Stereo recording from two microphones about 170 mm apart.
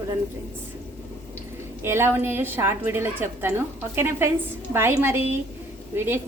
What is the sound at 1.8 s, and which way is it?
A woman's voice, 15° right (ahead or behind).